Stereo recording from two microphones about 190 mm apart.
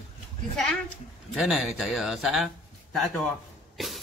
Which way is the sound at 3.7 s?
Centre (ahead or behind).